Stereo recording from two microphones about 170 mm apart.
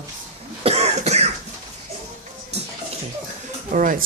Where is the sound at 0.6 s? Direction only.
40° right (ahead or behind).